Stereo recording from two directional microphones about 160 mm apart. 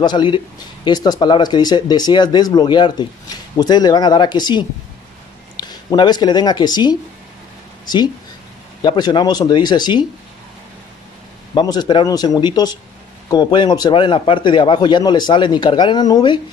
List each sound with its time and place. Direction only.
0.0 s speech: 30° left (ahead or behind)
8.8 s speech: 25° left (ahead or behind)
11.5 s speech: 25° left (ahead or behind)